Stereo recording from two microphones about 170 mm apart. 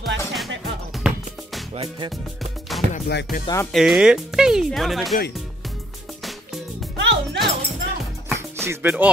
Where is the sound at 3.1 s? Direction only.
85° left.